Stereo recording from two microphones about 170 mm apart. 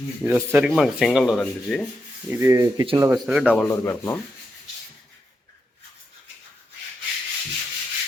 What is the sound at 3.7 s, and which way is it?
Speech, 15° left (ahead or behind).